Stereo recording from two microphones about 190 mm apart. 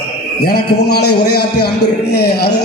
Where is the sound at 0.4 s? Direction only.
55° left (ahead or behind).